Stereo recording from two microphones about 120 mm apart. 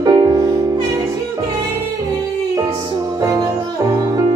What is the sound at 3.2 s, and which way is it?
Music, 30° right (ahead or behind).